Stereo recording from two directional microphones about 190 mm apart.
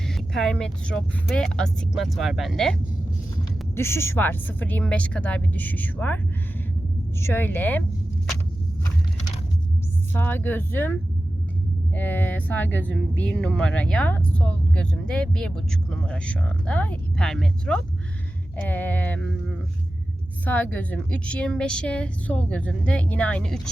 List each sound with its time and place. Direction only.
0.1 s speech: centre (ahead or behind)
3.8 s a woman's voice: 15° left (ahead or behind)
7.2 s a woman's voice: 10° left (ahead or behind)
10.2 s a woman's voice: 10° left (ahead or behind)
11.9 s a woman's voice: 10° left (ahead or behind)